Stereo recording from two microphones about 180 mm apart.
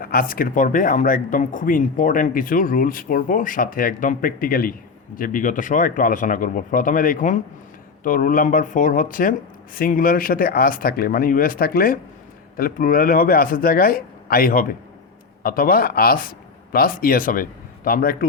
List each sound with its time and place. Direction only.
0.0 s a man's voice: 55° left (ahead or behind)